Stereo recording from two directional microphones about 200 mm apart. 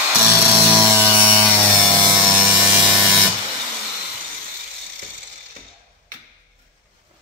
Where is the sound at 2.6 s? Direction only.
5° right (ahead or behind).